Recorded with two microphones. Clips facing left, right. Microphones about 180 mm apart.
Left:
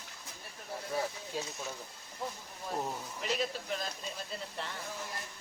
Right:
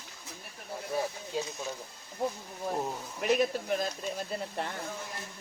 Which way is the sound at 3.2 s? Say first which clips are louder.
Right 8 dB; 55° right (ahead or behind).